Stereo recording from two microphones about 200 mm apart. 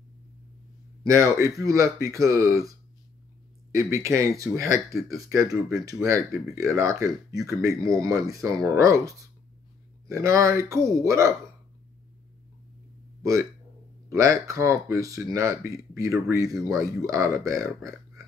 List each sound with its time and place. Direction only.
1.0 s speech: 15° right (ahead or behind)
3.7 s speech: 15° right (ahead or behind)
13.2 s speech: 15° right (ahead or behind)